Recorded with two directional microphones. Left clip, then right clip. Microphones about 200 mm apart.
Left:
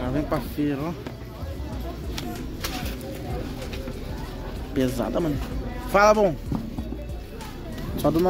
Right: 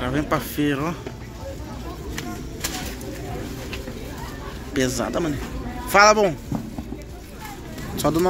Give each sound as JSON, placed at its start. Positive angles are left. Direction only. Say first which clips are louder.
{"t": 0.0, "sound": "speech", "louder": "right 3 dB", "side_deg": 5}
{"t": 4.7, "sound": "speech", "louder": "right 2 dB", "side_deg": 15}
{"t": 8.0, "sound": "speech", "louder": "right 1 dB", "side_deg": 15}